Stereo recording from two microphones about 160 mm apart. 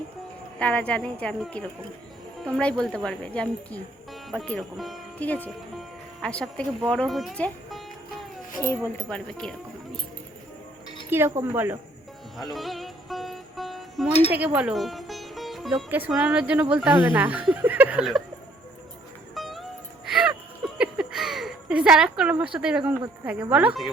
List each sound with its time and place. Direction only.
0.6 s speech: 10° left (ahead or behind)
9.0 s speech: 5° left (ahead or behind)
11.1 s speech: 15° right (ahead or behind)
12.5 s music: centre (ahead or behind)
15.9 s speech: 10° right (ahead or behind)
19.3 s music: centre (ahead or behind)
20.7 s a sound: 5° right (ahead or behind)
22.5 s speech: 5° right (ahead or behind)